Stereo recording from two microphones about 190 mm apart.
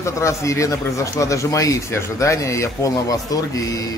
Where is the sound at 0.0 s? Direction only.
15° left (ahead or behind).